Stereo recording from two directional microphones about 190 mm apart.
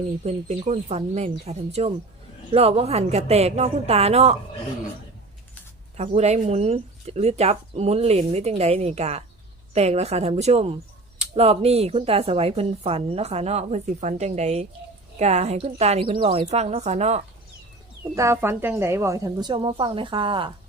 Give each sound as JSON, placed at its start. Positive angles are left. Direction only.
{"t": 0.3, "sound": "a woman's voice", "side_deg": -40}
{"t": 6.1, "sound": "a woman's voice", "side_deg": -35}
{"t": 18.1, "sound": "a woman's voice", "side_deg": -15}